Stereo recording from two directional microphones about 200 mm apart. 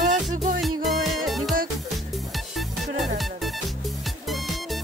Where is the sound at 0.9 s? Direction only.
Centre (ahead or behind).